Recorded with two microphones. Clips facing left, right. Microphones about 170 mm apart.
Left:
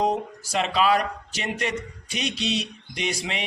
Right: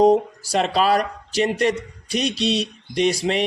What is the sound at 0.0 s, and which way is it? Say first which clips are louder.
Speech: right 9 dB; 35° right (ahead or behind).